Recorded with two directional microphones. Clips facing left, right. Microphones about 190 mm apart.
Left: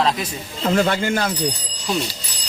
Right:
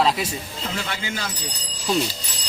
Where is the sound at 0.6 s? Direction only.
55° left (ahead or behind).